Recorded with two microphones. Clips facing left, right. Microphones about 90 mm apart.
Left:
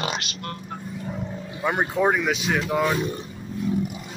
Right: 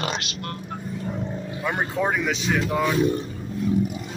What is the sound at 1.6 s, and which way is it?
Speech, 15° left (ahead or behind).